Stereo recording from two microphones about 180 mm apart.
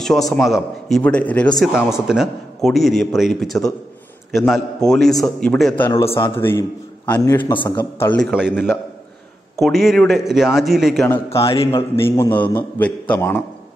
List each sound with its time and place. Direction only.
0.0 s a man's voice: centre (ahead or behind)
5.9 s a man's voice: 15° left (ahead or behind)
8.0 s a man's voice: 10° left (ahead or behind)
8.3 s a man's voice: 5° right (ahead or behind)
11.2 s a man's voice: 30° left (ahead or behind)
12.0 s a man's voice: 10° left (ahead or behind)